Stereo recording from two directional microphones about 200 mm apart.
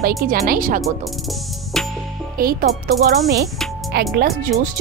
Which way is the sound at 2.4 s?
45° right (ahead or behind).